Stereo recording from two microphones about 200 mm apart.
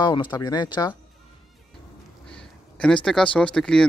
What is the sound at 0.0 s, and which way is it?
Speech, 25° left (ahead or behind).